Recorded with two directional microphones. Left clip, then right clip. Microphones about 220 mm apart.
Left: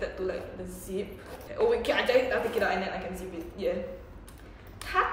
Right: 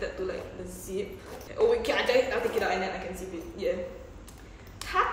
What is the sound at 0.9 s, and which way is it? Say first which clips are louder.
A man's voice: right 1 dB; 5° right (ahead or behind).